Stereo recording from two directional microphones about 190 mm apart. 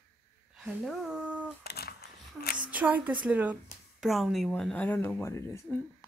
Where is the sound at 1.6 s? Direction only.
55° left (ahead or behind).